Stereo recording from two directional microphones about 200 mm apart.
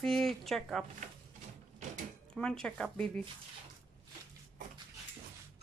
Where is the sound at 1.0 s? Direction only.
40° right (ahead or behind).